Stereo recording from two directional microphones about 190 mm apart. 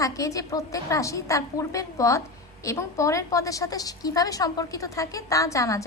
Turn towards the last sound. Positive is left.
turn(degrees=15)  # may be behind; listen again after turning